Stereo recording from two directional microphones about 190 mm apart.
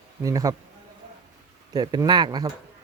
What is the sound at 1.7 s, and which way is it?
Speech, 20° right (ahead or behind).